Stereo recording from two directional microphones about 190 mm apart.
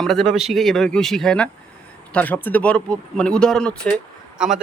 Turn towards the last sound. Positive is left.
turn(degrees=0)  # may be behind; listen again after turning